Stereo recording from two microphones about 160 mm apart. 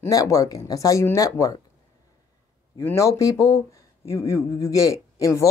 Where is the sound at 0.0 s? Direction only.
20° left (ahead or behind).